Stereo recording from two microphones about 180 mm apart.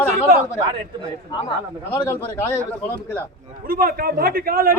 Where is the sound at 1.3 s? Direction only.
25° left (ahead or behind).